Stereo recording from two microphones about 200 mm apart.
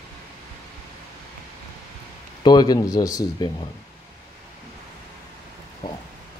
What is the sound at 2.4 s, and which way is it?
Speech, 20° left (ahead or behind).